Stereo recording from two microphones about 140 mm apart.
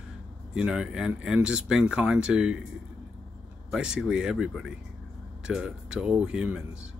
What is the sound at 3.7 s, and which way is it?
Speech, 5° right (ahead or behind).